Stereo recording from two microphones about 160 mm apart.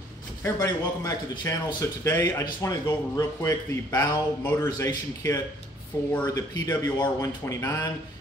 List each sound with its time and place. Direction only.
0.4 s speech: 20° left (ahead or behind)